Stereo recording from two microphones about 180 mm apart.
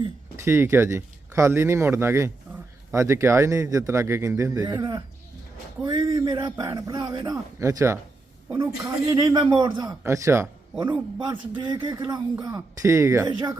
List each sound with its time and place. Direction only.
0.4 s a man's voice: 15° right (ahead or behind)